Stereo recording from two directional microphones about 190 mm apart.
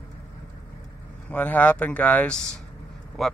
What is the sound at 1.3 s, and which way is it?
Speech, 10° left (ahead or behind).